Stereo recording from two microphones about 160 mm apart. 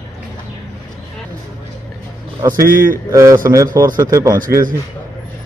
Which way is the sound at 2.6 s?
60° right (ahead or behind).